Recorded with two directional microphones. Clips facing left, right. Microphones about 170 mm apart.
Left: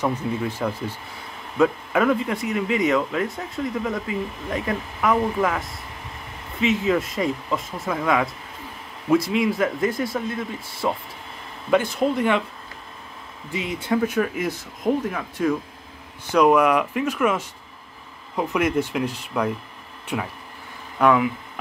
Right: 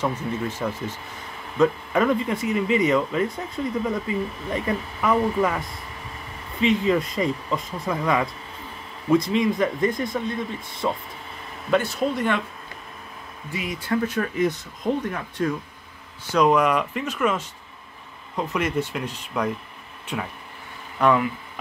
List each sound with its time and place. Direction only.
0.5 s speech: 10° left (ahead or behind)
13.5 s speech: 25° left (ahead or behind)
14.0 s speech: 10° left (ahead or behind)
21.0 s speech: 5° left (ahead or behind)